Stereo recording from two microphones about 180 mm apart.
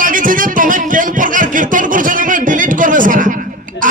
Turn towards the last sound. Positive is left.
turn(degrees=-50)  # may be behind; listen again after turning